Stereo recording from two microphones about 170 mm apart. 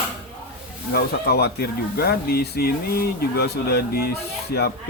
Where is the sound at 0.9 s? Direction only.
70° left (ahead or behind).